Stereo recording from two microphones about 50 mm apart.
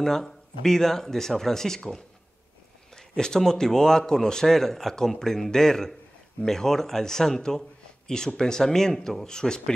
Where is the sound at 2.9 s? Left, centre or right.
Centre.